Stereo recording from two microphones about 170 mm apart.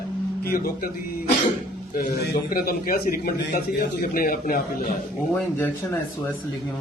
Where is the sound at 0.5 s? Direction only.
55° left (ahead or behind).